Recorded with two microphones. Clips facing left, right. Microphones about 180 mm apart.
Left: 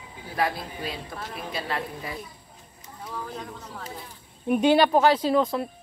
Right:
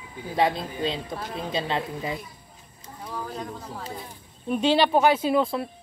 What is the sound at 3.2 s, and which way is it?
Speech, centre (ahead or behind).